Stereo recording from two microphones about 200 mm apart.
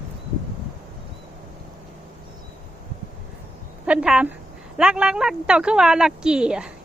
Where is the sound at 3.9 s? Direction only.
5° right (ahead or behind).